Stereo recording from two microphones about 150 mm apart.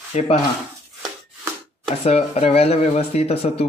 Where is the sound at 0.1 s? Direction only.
45° left (ahead or behind).